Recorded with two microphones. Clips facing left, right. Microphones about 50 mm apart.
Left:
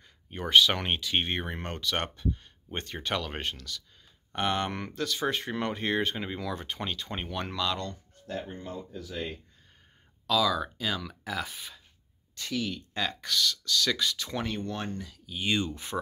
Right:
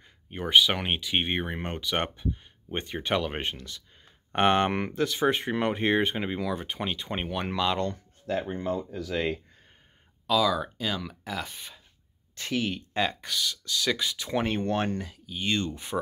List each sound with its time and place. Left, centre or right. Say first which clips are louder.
0.0 s speech: right 2 dB; centre
4.3 s speech: right 7 dB; right
7.9 s speech: right 7 dB; right
10.2 s speech: right 2 dB; centre
12.4 s speech: right 3 dB; right
13.1 s speech: left 2 dB; centre
14.4 s speech: right 5 dB; right
14.7 s speech: right 7 dB; right
15.2 s speech: even; centre
15.7 s speech: right 2 dB; centre